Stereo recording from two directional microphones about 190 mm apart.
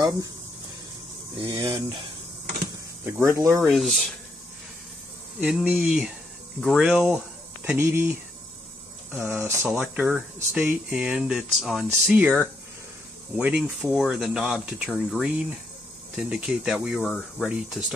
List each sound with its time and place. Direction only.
1.5 s speech: 25° right (ahead or behind)
3.2 s speech: 15° right (ahead or behind)
3.7 s speech: centre (ahead or behind)
5.4 s speech: 5° right (ahead or behind)